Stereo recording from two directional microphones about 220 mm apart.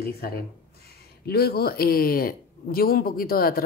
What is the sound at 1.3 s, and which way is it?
Speech, 45° left (ahead or behind).